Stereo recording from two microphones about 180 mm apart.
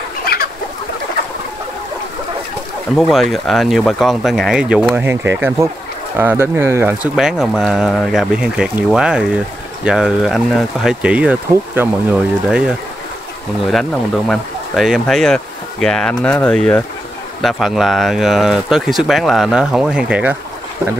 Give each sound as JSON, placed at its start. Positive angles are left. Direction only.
{"t": 0.2, "sound": "chicken", "side_deg": 55}
{"t": 3.0, "sound": "speech", "side_deg": 0}